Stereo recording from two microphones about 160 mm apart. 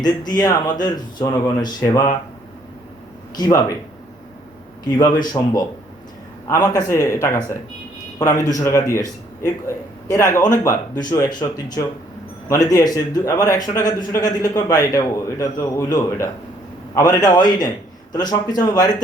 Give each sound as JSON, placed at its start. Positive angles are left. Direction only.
{"t": 0.0, "sound": "speech", "side_deg": 25}
{"t": 3.3, "sound": "speech", "side_deg": 25}
{"t": 4.9, "sound": "speech", "side_deg": 25}